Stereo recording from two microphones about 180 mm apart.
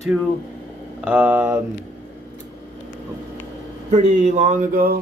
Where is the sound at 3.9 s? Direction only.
40° right (ahead or behind).